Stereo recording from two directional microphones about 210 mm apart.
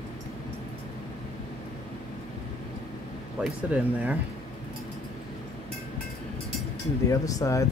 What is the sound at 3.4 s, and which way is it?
Speech, 5° right (ahead or behind).